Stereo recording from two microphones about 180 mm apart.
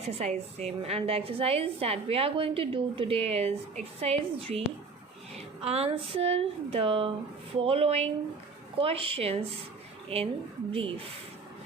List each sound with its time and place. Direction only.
0.0 s a woman's voice: 35° right (ahead or behind)